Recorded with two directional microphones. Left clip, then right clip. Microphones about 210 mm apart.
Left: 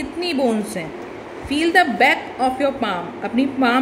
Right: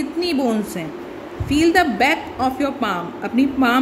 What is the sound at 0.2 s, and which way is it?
A woman's voice, 5° right (ahead or behind).